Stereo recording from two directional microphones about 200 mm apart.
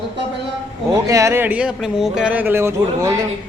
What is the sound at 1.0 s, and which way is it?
Speech, 15° right (ahead or behind).